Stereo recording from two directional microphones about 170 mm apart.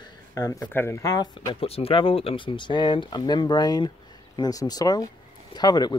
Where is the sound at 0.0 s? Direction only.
20° left (ahead or behind).